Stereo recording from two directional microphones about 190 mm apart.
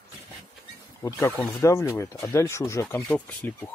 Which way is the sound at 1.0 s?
15° left (ahead or behind).